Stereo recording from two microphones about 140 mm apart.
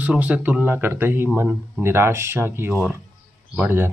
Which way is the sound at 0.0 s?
10° right (ahead or behind).